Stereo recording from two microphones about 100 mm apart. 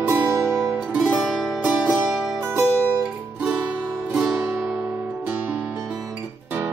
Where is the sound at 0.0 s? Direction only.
25° right (ahead or behind).